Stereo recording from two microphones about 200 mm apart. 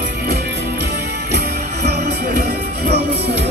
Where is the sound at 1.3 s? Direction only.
55° right (ahead or behind).